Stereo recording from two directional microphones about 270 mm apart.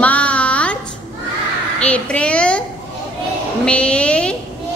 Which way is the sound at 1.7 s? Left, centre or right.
Centre.